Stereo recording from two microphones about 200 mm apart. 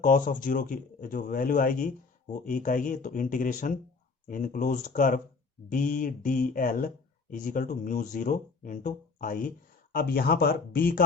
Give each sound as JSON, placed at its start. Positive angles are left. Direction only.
{"t": 0.0, "sound": "speech", "side_deg": 40}